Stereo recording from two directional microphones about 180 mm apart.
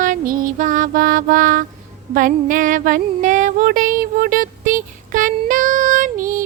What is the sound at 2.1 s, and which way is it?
Female singing, 50° right (ahead or behind).